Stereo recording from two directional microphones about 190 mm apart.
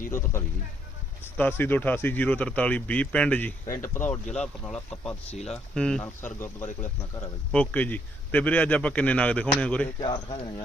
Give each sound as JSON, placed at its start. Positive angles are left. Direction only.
{"t": 1.2, "sound": "speech", "side_deg": 10}
{"t": 10.0, "sound": "speech", "side_deg": 25}